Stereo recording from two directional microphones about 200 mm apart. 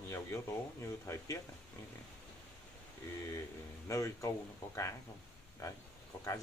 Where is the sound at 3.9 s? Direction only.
15° left (ahead or behind).